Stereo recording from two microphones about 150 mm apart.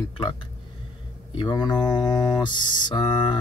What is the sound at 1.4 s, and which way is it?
Speech, 30° left (ahead or behind).